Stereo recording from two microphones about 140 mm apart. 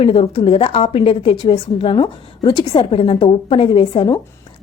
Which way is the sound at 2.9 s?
40° left (ahead or behind).